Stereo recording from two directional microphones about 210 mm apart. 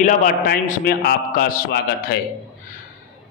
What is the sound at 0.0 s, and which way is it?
A man's voice, 40° left (ahead or behind).